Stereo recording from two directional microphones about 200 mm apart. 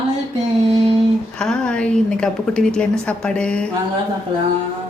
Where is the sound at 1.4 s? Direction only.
5° left (ahead or behind).